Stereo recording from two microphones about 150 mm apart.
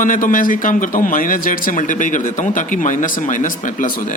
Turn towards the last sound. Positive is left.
turn(degrees=65)  # may be behind; listen again after turning